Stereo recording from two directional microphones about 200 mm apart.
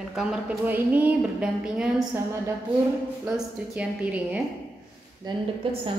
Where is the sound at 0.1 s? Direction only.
Centre (ahead or behind).